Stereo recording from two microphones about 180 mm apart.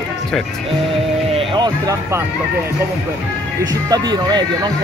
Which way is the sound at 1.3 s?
25° right (ahead or behind).